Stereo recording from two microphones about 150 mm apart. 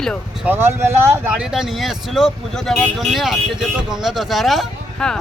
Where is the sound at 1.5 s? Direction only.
Centre (ahead or behind).